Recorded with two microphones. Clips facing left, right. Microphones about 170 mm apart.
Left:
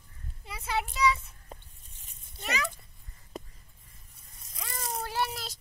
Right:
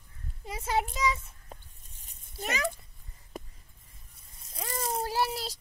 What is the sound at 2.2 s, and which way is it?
Speech, 45° right (ahead or behind).